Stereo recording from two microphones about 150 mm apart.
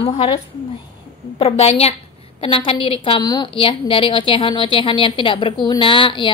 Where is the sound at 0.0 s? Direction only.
40° left (ahead or behind).